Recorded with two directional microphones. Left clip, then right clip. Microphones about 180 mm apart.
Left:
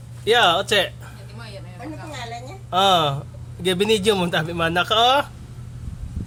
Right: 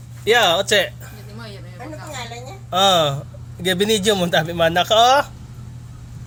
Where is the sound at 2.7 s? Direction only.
10° right (ahead or behind).